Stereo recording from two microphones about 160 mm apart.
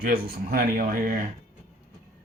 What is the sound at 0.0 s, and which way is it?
Speech, 65° right (ahead or behind).